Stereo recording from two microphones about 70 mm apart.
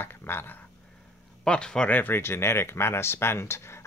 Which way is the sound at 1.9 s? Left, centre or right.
Left.